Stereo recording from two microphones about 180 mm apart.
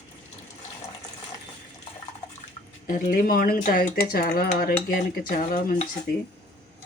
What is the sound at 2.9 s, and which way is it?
Speech, 50° left (ahead or behind).